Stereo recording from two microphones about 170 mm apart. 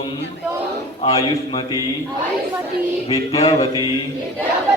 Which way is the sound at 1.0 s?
25° left (ahead or behind).